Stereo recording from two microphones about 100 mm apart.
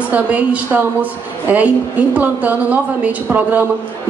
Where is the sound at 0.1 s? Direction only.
15° right (ahead or behind).